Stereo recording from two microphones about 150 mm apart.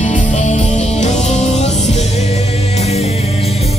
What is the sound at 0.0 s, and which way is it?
Music, 55° left (ahead or behind).